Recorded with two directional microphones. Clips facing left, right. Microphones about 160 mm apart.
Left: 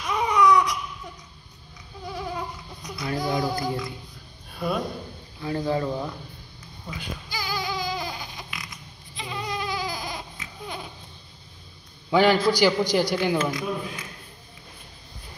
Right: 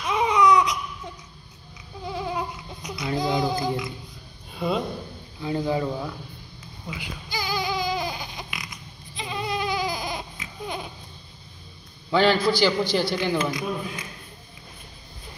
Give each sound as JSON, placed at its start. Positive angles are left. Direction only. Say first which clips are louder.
{"t": 0.1, "sound": "baby cry", "louder": "right 1 dB", "side_deg": -20}
{"t": 2.0, "sound": "a sound", "louder": "right 3 dB", "side_deg": -20}
{"t": 4.6, "sound": "speech", "louder": "right 1 dB", "side_deg": -20}
{"t": 5.9, "sound": "speech", "louder": "left 1 dB", "side_deg": 0}
{"t": 7.0, "sound": "baby cry", "louder": "right 1 dB", "side_deg": -20}
{"t": 9.1, "sound": "goat", "louder": "right 3 dB", "side_deg": -20}
{"t": 12.1, "sound": "a man's voice", "louder": "left 1 dB", "side_deg": 10}
{"t": 13.4, "sound": "speech", "louder": "even", "side_deg": -15}